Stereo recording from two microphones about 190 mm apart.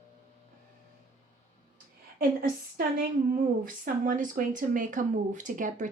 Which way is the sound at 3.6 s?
45° right (ahead or behind).